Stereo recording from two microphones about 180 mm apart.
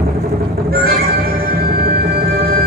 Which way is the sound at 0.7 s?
55° right (ahead or behind).